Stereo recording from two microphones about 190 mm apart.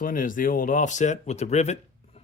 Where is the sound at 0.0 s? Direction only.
45° left (ahead or behind).